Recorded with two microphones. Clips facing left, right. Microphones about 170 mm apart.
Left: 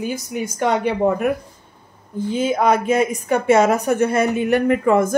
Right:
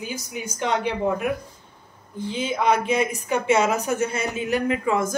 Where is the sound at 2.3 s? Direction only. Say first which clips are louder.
Left 5 dB; 45° left (ahead or behind).